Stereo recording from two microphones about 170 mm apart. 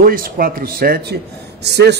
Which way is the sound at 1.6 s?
75° right (ahead or behind).